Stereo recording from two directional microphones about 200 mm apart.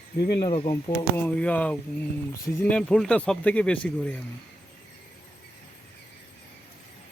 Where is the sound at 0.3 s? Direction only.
25° left (ahead or behind); by 4.2 s 5° left (ahead or behind).